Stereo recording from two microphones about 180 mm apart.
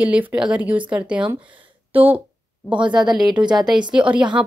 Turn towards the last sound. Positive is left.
turn(degrees=-5)  # may be behind; listen again after turning